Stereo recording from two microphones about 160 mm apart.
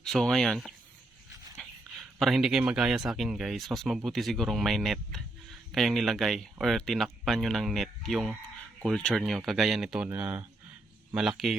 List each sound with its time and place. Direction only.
0.0 s speech: centre (ahead or behind)